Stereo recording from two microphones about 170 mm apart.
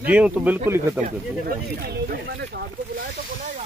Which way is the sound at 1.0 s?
65° right (ahead or behind).